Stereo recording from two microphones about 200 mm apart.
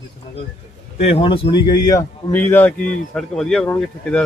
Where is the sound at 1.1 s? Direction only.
25° left (ahead or behind).